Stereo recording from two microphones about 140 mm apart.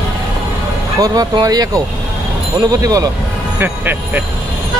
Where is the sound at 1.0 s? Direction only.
25° right (ahead or behind).